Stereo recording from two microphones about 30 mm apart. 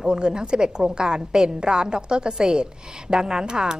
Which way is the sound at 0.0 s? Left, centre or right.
Right.